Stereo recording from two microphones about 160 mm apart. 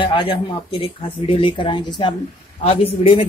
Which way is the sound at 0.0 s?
30° left (ahead or behind).